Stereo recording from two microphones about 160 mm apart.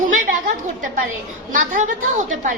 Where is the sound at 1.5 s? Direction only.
55° right (ahead or behind).